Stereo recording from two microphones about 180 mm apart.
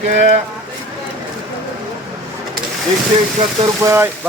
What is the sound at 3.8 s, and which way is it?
Speech, 15° right (ahead or behind).